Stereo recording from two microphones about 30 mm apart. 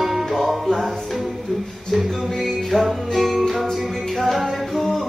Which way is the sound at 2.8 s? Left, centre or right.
Centre.